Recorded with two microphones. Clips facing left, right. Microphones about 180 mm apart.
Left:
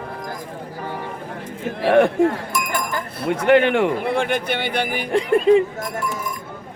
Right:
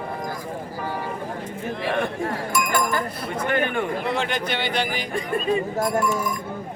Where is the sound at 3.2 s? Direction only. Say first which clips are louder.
Left 12 dB; 80° left.